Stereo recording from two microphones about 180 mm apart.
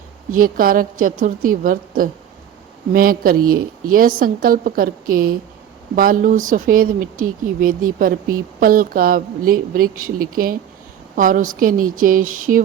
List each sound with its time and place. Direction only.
0.3 s speech: 50° right (ahead or behind)